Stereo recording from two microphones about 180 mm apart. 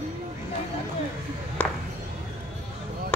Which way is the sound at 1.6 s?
10° left (ahead or behind).